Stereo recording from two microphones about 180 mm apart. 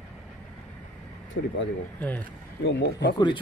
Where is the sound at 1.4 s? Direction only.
90° left.